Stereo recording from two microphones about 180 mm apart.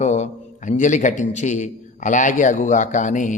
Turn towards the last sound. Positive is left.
turn(degrees=45)  # may be behind; listen again after turning